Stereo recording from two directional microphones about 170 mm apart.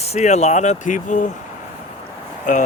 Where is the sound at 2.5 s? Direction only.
50° left (ahead or behind).